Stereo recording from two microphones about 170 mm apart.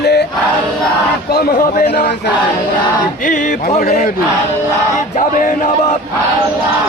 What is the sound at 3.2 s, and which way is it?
Music, 50° left (ahead or behind).